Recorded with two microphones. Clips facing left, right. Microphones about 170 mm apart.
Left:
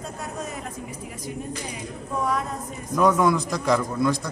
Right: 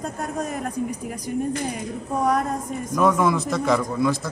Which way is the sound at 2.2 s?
45° right (ahead or behind).